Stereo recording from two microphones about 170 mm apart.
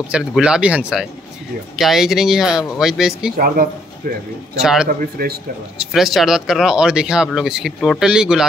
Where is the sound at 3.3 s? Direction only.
60° right (ahead or behind).